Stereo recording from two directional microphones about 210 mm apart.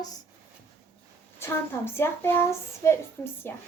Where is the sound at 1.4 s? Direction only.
10° left (ahead or behind).